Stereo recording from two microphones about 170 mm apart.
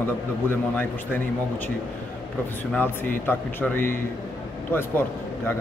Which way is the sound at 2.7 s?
10° left (ahead or behind).